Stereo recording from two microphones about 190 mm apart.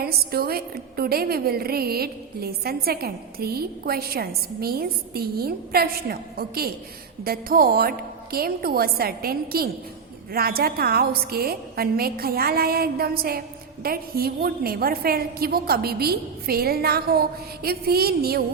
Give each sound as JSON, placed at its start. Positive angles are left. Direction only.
{"t": 0.0, "sound": "a woman's voice", "side_deg": -55}